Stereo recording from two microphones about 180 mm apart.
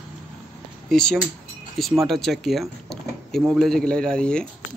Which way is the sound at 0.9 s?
5° left (ahead or behind).